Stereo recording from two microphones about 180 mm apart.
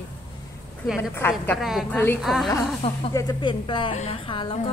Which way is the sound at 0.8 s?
Centre (ahead or behind).